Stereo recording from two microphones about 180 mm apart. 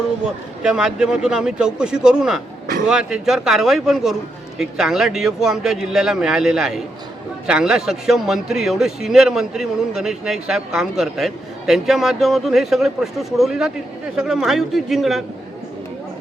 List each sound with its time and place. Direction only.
0.3 s speech: 5° right (ahead or behind)